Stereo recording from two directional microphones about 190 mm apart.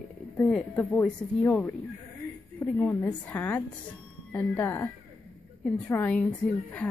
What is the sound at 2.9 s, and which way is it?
A woman's voice, 10° left (ahead or behind).